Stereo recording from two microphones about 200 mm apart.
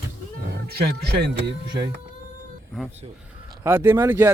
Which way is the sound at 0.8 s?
55° right (ahead or behind).